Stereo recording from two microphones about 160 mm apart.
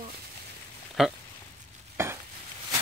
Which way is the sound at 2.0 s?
15° right (ahead or behind).